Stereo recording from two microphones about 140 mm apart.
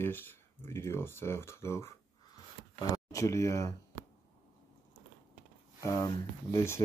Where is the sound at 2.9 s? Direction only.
20° left (ahead or behind).